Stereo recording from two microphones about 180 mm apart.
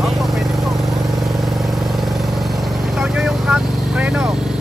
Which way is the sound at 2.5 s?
5° right (ahead or behind).